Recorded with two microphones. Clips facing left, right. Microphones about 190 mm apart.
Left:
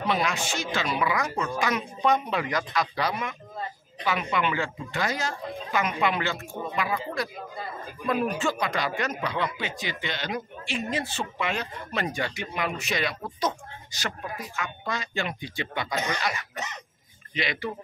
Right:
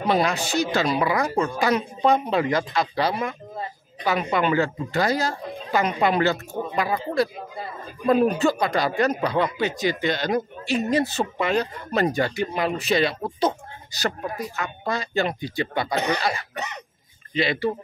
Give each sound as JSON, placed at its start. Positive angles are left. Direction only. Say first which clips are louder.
{"t": 0.0, "sound": "speech", "louder": "right 5 dB", "side_deg": -35}
{"t": 15.9, "sound": "speech", "louder": "right 5 dB", "side_deg": -65}
{"t": 16.2, "sound": "speech", "louder": "right 4 dB", "side_deg": -35}
{"t": 16.5, "sound": "speech", "louder": "right 4 dB", "side_deg": -65}
{"t": 17.3, "sound": "speech", "louder": "right 7 dB", "side_deg": -30}